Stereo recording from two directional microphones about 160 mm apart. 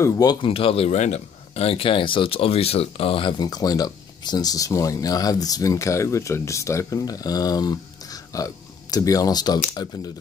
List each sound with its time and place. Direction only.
0.0 s a man's voice: 25° left (ahead or behind)